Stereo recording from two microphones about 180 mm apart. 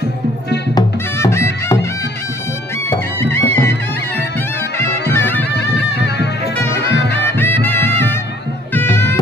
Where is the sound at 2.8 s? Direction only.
10° left (ahead or behind).